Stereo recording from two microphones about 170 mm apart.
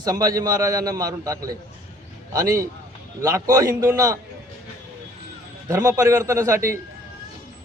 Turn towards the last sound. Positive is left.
turn(degrees=-15)  # may be behind; listen again after turning